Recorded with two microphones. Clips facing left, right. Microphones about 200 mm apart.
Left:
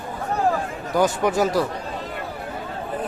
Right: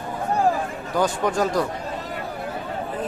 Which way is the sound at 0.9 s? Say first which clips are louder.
Left 2 dB; 10° left (ahead or behind).